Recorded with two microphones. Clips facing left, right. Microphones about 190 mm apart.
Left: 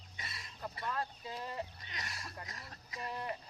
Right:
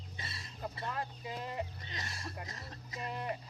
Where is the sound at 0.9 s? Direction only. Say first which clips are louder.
Even; 15° right (ahead or behind).